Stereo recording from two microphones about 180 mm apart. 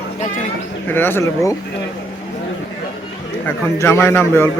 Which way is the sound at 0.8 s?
10° left (ahead or behind).